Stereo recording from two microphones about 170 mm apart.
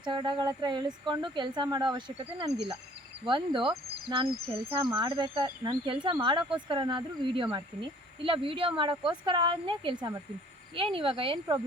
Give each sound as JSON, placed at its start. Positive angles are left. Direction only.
{"t": 0.0, "sound": "speech", "side_deg": -25}
{"t": 10.9, "sound": "speech", "side_deg": -30}